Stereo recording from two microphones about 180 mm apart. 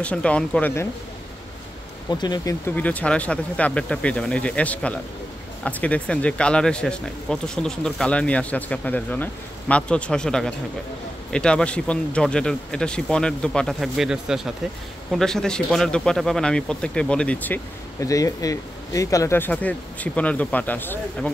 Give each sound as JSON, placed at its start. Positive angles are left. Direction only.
{"t": 0.0, "sound": "speech", "side_deg": 5}
{"t": 2.0, "sound": "speech", "side_deg": 20}
{"t": 2.7, "sound": "speech", "side_deg": 10}
{"t": 18.0, "sound": "speech", "side_deg": 20}